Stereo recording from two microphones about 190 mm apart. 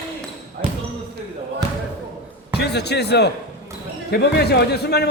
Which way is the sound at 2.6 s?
60° left (ahead or behind).